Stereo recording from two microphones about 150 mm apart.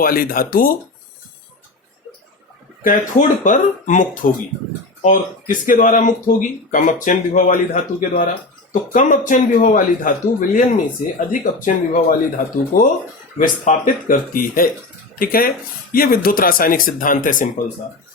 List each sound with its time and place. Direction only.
0.0 s speech: 75° left (ahead or behind)
2.8 s speech: 60° left (ahead or behind)